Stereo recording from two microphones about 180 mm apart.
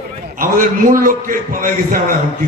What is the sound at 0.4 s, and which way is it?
A man's voice, 50° right (ahead or behind).